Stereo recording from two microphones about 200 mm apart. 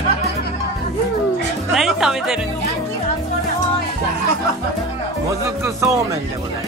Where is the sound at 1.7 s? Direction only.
Centre (ahead or behind).